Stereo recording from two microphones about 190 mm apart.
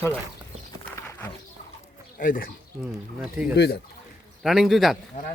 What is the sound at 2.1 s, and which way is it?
Speech, 45° left (ahead or behind).